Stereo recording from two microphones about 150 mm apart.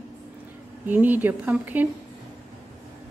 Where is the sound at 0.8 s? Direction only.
10° right (ahead or behind).